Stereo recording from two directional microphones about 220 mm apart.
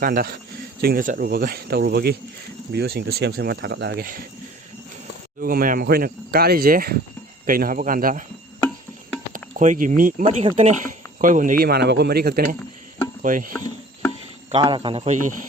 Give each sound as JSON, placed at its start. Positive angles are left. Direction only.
{"t": 0.0, "sound": "speech", "side_deg": -40}
{"t": 5.4, "sound": "speech", "side_deg": -40}
{"t": 9.3, "sound": "speech", "side_deg": -35}
{"t": 14.6, "sound": "speech", "side_deg": -20}